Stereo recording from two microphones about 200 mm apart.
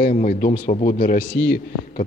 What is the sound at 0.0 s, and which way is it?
Speech, 40° left (ahead or behind).